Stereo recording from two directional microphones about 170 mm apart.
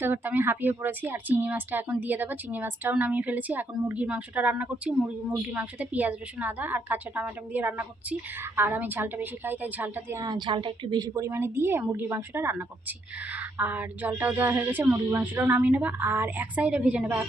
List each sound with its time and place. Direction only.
0.0 s a woman's voice: 10° right (ahead or behind)
10.2 s a woman's voice: 25° right (ahead or behind); by 17.2 s 10° right (ahead or behind)